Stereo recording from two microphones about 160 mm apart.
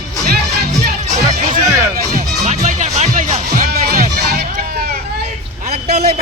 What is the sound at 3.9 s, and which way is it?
Music, 75° right (ahead or behind).